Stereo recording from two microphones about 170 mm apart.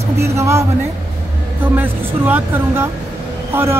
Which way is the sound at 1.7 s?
10° right (ahead or behind).